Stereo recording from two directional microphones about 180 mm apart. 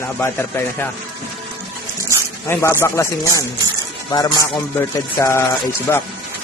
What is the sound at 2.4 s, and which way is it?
Speech, 15° left (ahead or behind).